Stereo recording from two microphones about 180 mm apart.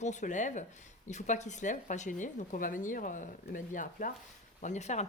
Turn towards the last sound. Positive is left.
turn(degrees=40)  # may be behind; listen again after turning